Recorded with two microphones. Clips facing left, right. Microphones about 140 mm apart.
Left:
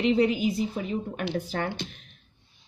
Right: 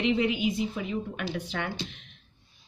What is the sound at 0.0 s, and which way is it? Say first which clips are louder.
A woman's voice: left 3 dB; 35° left (ahead or behind).